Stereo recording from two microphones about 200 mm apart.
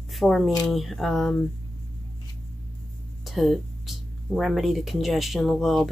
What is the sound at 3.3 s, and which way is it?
Speech, centre (ahead or behind).